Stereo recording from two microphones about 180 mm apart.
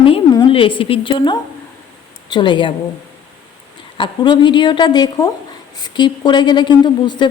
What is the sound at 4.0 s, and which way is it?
Speech, 25° left (ahead or behind).